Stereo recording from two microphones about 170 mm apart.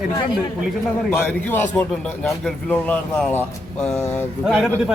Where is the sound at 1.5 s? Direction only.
15° left (ahead or behind).